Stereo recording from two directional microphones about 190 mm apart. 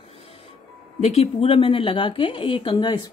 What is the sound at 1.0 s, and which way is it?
A woman's voice, 30° left (ahead or behind).